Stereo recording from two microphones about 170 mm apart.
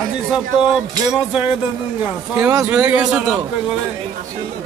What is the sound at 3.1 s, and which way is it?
Speech, 5° right (ahead or behind).